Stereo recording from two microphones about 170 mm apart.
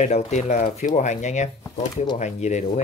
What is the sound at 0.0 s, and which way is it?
Speech, 40° left (ahead or behind).